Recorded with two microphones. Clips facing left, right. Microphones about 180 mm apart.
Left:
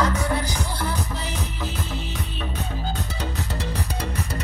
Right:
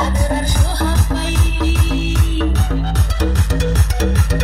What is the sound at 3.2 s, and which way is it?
Music, 80° right.